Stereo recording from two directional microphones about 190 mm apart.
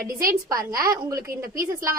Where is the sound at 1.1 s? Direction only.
15° right (ahead or behind).